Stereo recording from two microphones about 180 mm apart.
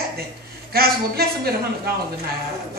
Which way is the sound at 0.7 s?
60° right (ahead or behind).